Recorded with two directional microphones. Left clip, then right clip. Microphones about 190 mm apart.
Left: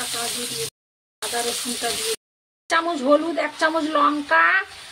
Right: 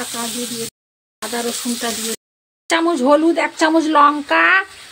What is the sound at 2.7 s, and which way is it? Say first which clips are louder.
Speech: right 4 dB; 55° right (ahead or behind).